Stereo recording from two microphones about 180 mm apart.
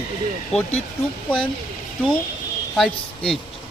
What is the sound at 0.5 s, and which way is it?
Speech, 35° left (ahead or behind).